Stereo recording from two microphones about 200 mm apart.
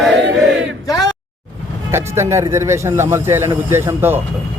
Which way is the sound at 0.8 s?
20° left (ahead or behind).